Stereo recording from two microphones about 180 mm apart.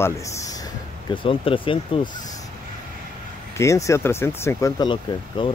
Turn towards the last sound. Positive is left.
turn(degrees=25)  # may be behind; listen again after turning